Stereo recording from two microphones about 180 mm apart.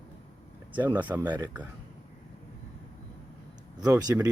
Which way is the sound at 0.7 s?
10° right (ahead or behind).